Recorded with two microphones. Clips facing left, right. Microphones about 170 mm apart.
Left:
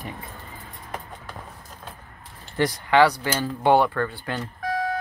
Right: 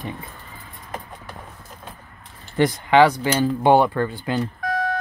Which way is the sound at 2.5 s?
20° right (ahead or behind).